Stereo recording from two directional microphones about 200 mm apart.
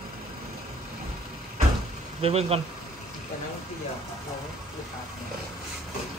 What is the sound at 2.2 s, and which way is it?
Speech, 30° right (ahead or behind).